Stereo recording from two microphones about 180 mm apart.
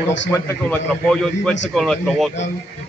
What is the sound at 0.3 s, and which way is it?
A man's voice, 15° left (ahead or behind).